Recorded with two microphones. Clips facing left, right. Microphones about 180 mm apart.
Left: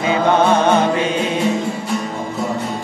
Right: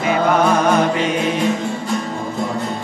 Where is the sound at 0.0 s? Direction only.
25° left (ahead or behind).